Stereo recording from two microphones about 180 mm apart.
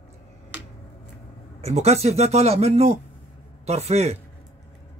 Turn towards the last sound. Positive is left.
turn(degrees=-35)  # may be behind; listen again after turning